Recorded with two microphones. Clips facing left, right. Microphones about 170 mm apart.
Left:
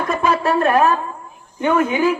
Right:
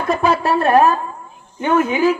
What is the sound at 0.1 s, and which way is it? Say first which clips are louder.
Speech: right 2 dB; 35° right (ahead or behind).